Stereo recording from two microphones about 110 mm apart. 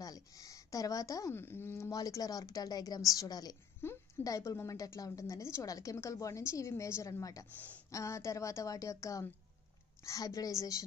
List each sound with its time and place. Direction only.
0.0 s a woman's voice: 30° left (ahead or behind)
7.5 s speech: 15° left (ahead or behind)
7.9 s a woman's voice: 25° left (ahead or behind)